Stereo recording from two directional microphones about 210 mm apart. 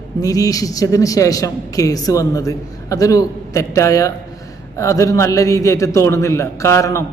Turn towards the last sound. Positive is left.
turn(degrees=15)  # may be behind; listen again after turning